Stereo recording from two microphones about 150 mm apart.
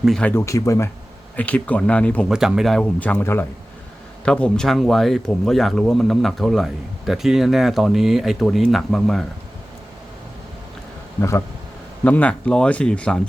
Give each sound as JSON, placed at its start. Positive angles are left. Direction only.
{"t": 0.0, "sound": "speech", "side_deg": 5}
{"t": 0.4, "sound": "speech", "side_deg": 20}
{"t": 1.4, "sound": "speech", "side_deg": 10}
{"t": 2.3, "sound": "speech", "side_deg": -5}
{"t": 11.2, "sound": "speech", "side_deg": 20}